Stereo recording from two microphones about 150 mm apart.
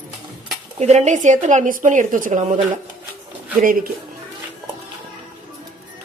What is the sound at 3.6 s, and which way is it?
Speech, 65° right (ahead or behind).